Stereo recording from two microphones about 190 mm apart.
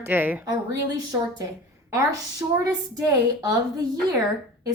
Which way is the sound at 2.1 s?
20° right (ahead or behind).